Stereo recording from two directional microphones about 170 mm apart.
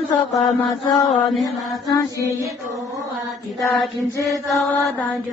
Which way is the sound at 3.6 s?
Centre (ahead or behind).